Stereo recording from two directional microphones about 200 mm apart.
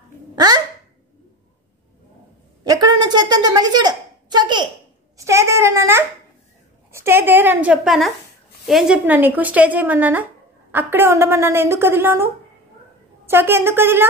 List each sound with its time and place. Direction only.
2.6 s a sound: 20° right (ahead or behind)
5.1 s a woman's voice: 15° right (ahead or behind)
13.3 s a woman's voice: 10° right (ahead or behind)